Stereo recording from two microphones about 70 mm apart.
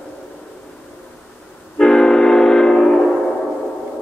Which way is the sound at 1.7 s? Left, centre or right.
Centre.